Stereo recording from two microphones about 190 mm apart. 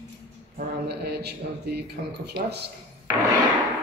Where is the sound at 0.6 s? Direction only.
60° right (ahead or behind).